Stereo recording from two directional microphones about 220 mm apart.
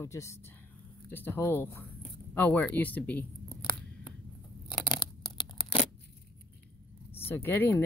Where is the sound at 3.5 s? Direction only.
20° left (ahead or behind).